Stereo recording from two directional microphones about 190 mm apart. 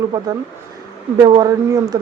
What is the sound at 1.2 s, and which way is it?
Speech, 20° right (ahead or behind).